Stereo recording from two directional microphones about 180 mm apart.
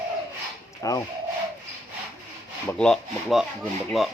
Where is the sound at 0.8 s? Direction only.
20° left (ahead or behind).